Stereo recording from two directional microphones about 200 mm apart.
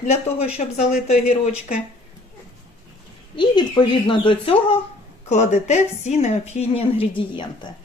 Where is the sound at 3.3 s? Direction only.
25° left (ahead or behind).